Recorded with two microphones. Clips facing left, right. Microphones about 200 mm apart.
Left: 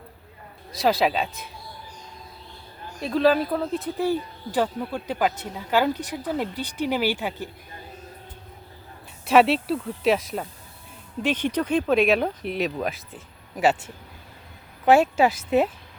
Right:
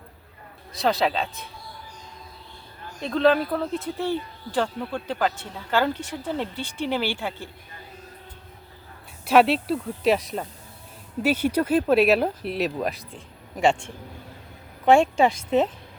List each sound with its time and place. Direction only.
0.8 s speech: 10° left (ahead or behind)
3.0 s speech: 5° left (ahead or behind)
6.5 s speech: 40° left (ahead or behind)
6.8 s speech: 10° left (ahead or behind)
9.2 s speech: centre (ahead or behind)